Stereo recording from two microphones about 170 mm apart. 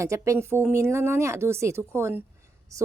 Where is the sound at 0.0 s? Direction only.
15° right (ahead or behind).